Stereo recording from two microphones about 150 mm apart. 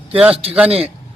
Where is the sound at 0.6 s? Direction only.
40° right (ahead or behind).